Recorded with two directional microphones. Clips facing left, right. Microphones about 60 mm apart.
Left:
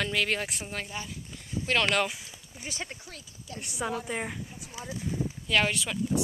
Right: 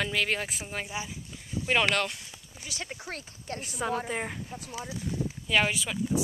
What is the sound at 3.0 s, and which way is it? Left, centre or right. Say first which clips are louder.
Speech: right 7 dB; right.